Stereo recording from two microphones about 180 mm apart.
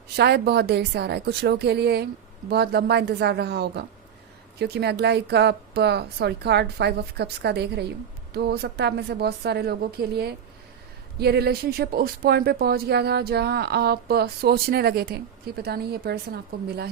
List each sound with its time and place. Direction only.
0.2 s a woman's voice: 65° right (ahead or behind)